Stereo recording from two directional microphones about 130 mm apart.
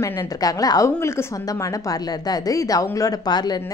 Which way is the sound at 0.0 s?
25° left (ahead or behind).